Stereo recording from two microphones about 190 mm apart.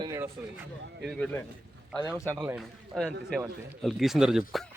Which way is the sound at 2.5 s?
Centre (ahead or behind).